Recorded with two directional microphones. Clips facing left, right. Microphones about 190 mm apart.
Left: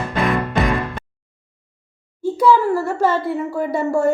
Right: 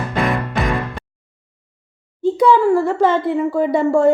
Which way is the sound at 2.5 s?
15° right (ahead or behind).